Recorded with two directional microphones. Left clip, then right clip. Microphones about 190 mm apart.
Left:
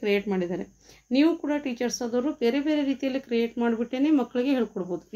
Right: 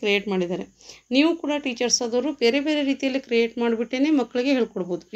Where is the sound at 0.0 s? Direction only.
25° right (ahead or behind).